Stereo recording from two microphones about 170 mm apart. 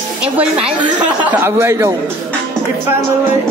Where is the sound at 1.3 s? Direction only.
15° right (ahead or behind).